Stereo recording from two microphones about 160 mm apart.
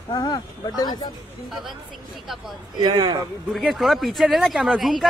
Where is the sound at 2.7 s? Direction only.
30° right (ahead or behind).